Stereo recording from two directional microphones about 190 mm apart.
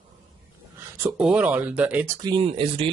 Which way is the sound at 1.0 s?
5° right (ahead or behind).